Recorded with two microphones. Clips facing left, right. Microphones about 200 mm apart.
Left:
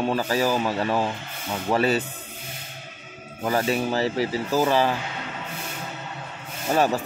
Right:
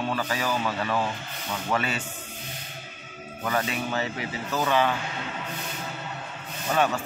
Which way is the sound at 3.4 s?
35° left (ahead or behind).